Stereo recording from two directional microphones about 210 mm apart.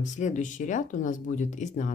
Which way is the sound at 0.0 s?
35° left (ahead or behind).